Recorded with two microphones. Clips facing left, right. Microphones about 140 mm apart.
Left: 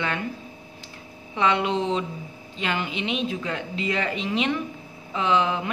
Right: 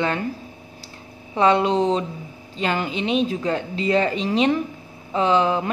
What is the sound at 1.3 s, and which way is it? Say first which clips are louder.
A woman's voice: right 5 dB; 35° right (ahead or behind).